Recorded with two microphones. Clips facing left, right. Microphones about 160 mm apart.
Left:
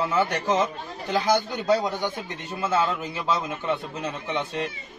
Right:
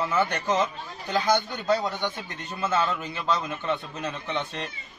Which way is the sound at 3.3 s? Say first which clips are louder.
Left 1 dB; 10° left (ahead or behind).